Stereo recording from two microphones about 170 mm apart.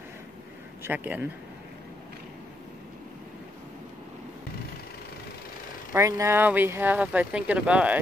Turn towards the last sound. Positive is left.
turn(degrees=-5)  # may be behind; listen again after turning